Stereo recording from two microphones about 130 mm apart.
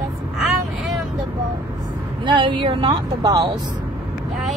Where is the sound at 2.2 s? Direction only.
40° right (ahead or behind).